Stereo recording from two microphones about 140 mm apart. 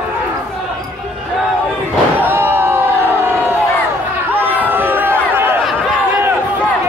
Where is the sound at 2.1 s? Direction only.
15° right (ahead or behind).